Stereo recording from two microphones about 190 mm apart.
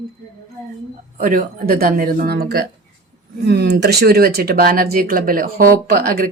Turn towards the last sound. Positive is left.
turn(degrees=-50)  # may be behind; listen again after turning